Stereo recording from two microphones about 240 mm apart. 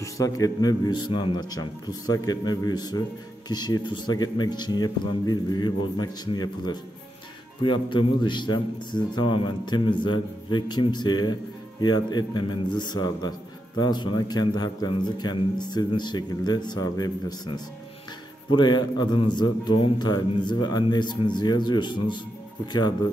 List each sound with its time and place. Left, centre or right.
0.0 s a man's voice: centre